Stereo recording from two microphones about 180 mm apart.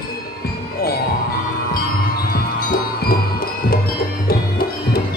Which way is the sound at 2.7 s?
55° left (ahead or behind).